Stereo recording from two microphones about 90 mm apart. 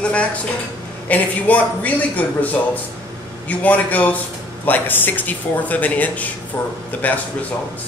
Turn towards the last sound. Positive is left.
turn(degrees=20)  # may be behind; listen again after turning